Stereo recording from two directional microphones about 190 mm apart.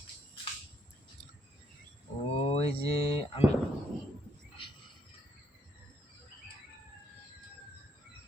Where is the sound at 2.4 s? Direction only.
30° left (ahead or behind).